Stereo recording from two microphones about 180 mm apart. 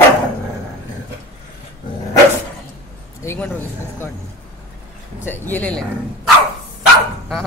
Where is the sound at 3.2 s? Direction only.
10° left (ahead or behind).